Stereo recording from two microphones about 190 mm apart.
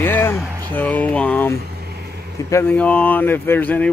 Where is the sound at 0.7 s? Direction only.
10° left (ahead or behind).